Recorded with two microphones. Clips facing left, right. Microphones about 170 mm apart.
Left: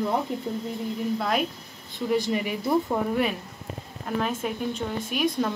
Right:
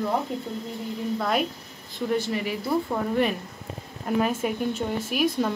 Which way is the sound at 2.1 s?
15° left (ahead or behind).